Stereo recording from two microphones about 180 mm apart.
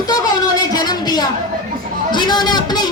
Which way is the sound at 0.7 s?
20° left (ahead or behind).